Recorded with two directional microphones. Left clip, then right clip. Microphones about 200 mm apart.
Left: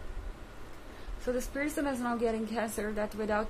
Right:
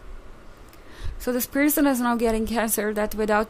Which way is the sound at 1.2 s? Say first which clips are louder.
Right 10 dB; 55° right (ahead or behind).